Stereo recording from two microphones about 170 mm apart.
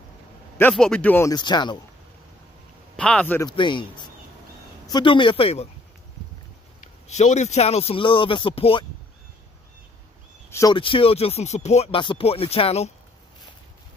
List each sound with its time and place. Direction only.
0.6 s speech: 5° left (ahead or behind)
1.3 s speech: 25° left (ahead or behind)
3.0 s speech: 5° left (ahead or behind)
3.4 s speech: 30° left (ahead or behind)
7.1 s speech: 40° left (ahead or behind)
10.5 s speech: 20° left (ahead or behind)
10.8 s speech: 30° left (ahead or behind)